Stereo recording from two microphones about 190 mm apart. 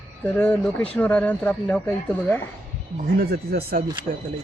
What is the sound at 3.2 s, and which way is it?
Speech, 55° right (ahead or behind).